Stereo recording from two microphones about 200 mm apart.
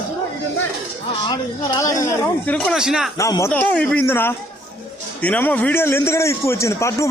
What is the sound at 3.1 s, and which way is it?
Speech, 15° left (ahead or behind).